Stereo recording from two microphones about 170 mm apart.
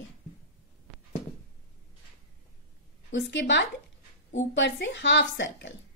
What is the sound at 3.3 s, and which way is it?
A woman's voice, 90° left.